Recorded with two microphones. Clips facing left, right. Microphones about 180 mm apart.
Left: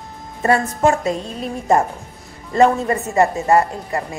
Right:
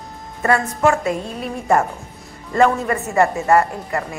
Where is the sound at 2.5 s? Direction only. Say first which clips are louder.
Left 2 dB; 25° left (ahead or behind).